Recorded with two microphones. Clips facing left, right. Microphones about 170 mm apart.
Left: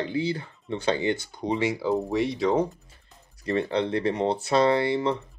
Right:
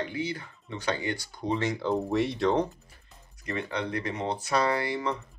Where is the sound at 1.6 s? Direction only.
10° left (ahead or behind).